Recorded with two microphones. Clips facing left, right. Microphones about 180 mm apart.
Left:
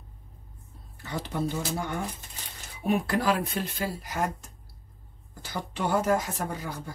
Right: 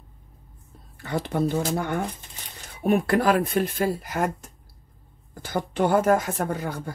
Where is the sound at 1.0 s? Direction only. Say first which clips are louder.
Right 6 dB; 55° right (ahead or behind).